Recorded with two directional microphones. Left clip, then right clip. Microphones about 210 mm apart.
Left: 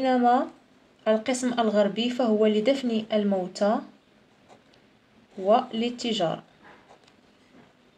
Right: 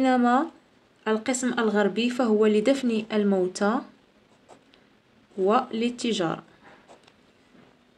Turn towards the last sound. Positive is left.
turn(degrees=-35)  # may be behind; listen again after turning